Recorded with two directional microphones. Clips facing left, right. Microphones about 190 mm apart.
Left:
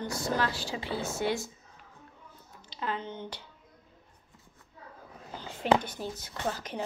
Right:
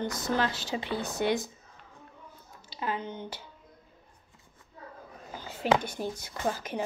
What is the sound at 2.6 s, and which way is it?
Speech, 10° right (ahead or behind).